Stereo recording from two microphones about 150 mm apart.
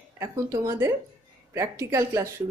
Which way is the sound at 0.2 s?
20° right (ahead or behind).